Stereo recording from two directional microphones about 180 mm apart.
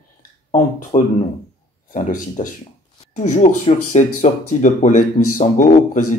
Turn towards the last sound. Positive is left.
turn(degrees=45)  # may be behind; listen again after turning